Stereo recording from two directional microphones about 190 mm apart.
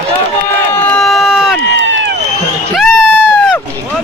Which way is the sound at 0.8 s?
5° left (ahead or behind).